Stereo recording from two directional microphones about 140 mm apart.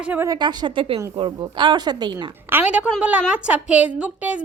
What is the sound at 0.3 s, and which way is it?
Speech, 30° right (ahead or behind).